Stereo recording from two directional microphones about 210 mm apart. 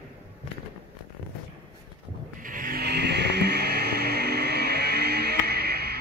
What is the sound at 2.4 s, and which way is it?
Music, 40° right (ahead or behind).